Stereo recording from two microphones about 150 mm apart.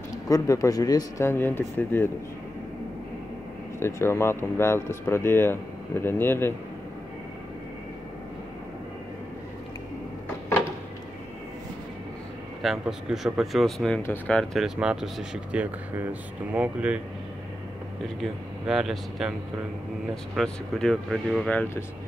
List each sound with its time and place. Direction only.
0.3 s speech: 25° left (ahead or behind)
3.8 s speech: 15° left (ahead or behind)
12.6 s speech: centre (ahead or behind)
18.0 s speech: centre (ahead or behind)
20.3 s speech: 5° left (ahead or behind)